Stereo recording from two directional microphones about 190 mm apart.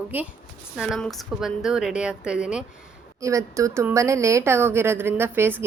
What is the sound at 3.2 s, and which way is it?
A woman's voice, 15° right (ahead or behind).